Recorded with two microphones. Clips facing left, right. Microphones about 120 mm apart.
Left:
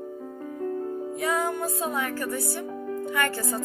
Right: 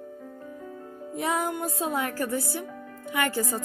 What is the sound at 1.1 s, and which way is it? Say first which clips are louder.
Music: even; 25° right (ahead or behind).